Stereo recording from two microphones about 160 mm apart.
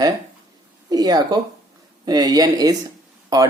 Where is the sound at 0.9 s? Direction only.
25° right (ahead or behind).